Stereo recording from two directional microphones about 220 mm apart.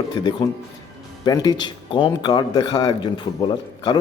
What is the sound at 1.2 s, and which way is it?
Speech, 15° left (ahead or behind).